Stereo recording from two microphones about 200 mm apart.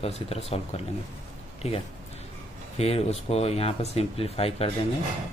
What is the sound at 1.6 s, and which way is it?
Speech, 30° left (ahead or behind).